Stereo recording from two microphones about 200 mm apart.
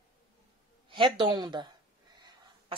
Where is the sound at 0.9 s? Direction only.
25° right (ahead or behind).